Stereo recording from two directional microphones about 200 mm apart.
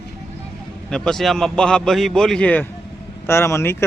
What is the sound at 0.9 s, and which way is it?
A man's voice, centre (ahead or behind).